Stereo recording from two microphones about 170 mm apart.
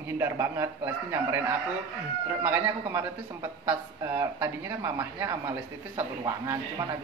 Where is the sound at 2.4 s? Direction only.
15° right (ahead or behind).